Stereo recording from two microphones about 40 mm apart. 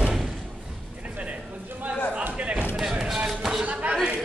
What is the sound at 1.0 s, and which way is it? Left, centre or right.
Music, right.